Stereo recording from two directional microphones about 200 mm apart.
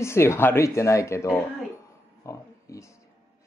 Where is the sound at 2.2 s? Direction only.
15° left (ahead or behind).